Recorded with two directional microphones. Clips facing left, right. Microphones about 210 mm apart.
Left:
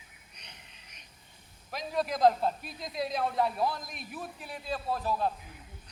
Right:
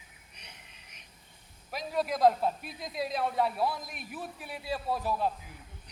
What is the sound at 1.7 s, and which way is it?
A man's voice, 5° right (ahead or behind).